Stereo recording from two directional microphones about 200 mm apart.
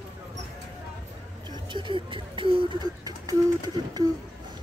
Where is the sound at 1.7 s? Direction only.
25° right (ahead or behind).